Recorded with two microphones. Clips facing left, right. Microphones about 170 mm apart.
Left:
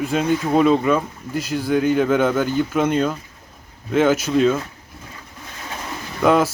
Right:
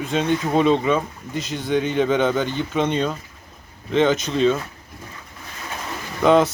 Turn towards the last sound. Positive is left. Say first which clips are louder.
# right 1 dB
turn(degrees=5)  # may be behind; listen again after turning